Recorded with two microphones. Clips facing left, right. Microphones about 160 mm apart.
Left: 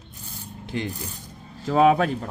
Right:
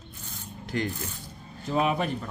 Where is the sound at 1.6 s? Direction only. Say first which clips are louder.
Left 8 dB; 90° left.